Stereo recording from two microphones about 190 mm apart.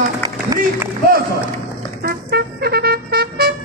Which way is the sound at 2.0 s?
55° right (ahead or behind).